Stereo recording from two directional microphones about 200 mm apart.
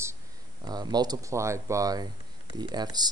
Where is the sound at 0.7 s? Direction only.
20° right (ahead or behind).